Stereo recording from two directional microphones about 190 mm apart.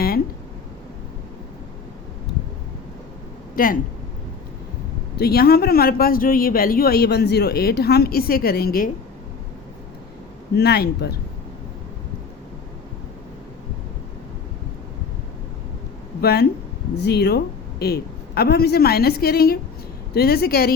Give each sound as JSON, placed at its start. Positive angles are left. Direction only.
{"t": 3.5, "sound": "speech", "side_deg": 45}
{"t": 5.2, "sound": "speech", "side_deg": 55}
{"t": 10.6, "sound": "a woman's voice", "side_deg": 55}
{"t": 16.2, "sound": "a woman's voice", "side_deg": 55}